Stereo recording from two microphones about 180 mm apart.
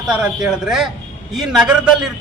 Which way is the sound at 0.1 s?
5° right (ahead or behind).